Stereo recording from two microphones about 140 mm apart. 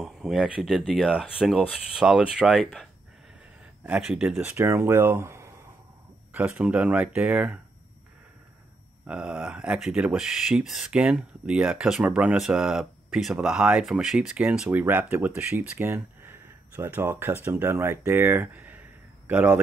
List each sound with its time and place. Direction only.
0.0 s speech: centre (ahead or behind); by 5.5 s 20° right (ahead or behind)
6.3 s speech: 5° right (ahead or behind)
9.0 s speech: 5° right (ahead or behind)